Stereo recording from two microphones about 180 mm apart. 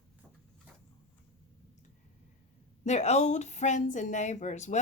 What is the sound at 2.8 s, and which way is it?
Speech, 40° left (ahead or behind).